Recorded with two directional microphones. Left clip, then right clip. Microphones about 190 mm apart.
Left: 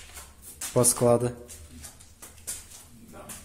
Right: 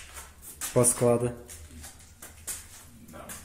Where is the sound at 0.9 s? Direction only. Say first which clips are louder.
Left 2 dB; 15° left (ahead or behind).